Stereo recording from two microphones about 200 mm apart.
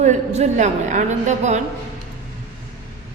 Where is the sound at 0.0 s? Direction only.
35° right (ahead or behind).